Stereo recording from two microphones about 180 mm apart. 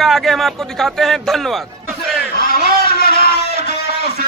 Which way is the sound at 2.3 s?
55° left (ahead or behind).